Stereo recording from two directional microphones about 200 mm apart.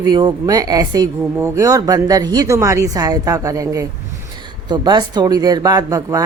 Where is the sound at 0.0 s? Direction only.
20° right (ahead or behind).